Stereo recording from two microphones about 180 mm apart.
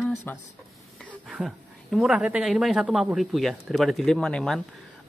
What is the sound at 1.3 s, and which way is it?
A woman's voice, centre (ahead or behind).